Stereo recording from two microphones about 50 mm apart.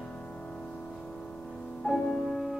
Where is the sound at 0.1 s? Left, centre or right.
Left.